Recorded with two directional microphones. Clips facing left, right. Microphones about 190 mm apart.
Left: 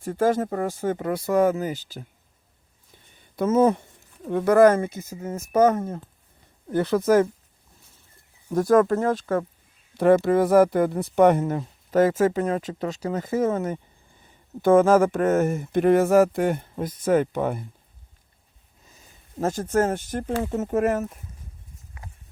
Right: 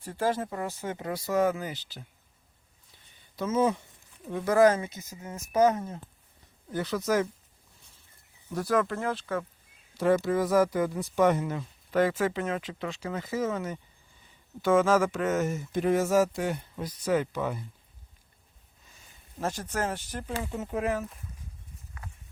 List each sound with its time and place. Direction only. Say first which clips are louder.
0.0 s speech: left 7 dB; 50° left (ahead or behind)
3.1 s speech: left 8 dB; 50° left (ahead or behind)
8.4 s speech: left 9 dB; 45° left (ahead or behind)
10.0 s speech: left 7 dB; 60° left (ahead or behind)
19.4 s speech: left 9 dB; 45° left (ahead or behind)